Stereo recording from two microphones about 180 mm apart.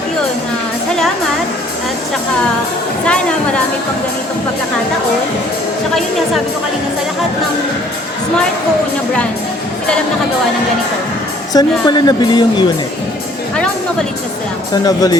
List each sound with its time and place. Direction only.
3.1 s a sound: 5° left (ahead or behind)
11.5 s a woman's voice: 20° left (ahead or behind)
14.8 s a woman's voice: 20° left (ahead or behind)